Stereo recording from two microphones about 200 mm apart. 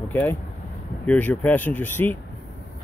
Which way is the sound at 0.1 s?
10° left (ahead or behind).